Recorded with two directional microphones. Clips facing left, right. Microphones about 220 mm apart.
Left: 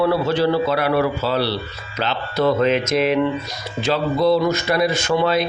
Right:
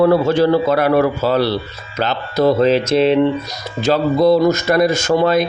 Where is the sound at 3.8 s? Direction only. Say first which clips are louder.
Right 5 dB; 45° right (ahead or behind).